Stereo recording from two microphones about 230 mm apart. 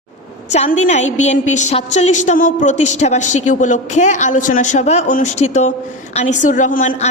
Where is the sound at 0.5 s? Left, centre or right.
Left.